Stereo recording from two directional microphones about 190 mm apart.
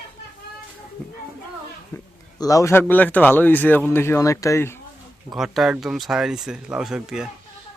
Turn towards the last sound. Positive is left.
turn(degrees=-5)  # may be behind; listen again after turning